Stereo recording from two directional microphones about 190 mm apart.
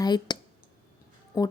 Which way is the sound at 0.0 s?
20° left (ahead or behind).